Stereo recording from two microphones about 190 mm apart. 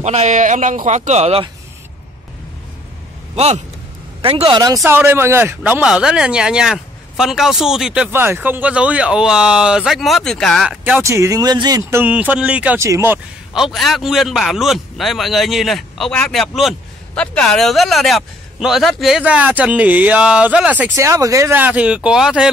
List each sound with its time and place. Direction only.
0.0 s speech: 35° right (ahead or behind)
3.3 s a man's voice: 35° right (ahead or behind)
4.8 s speech: 10° right (ahead or behind)
11.9 s speech: 10° right (ahead or behind)